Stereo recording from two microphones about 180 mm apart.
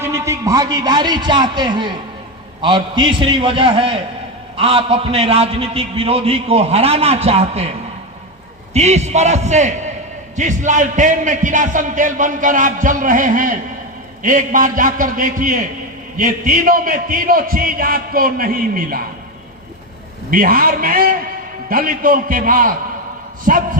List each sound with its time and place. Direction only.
0.0 s a man's voice: 15° right (ahead or behind); by 7.7 s 35° right (ahead or behind)
8.7 s a man's voice: 40° right (ahead or behind)
20.3 s a man's voice: 50° right (ahead or behind)